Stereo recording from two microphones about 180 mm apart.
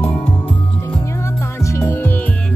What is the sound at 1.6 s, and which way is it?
Music, 15° left (ahead or behind).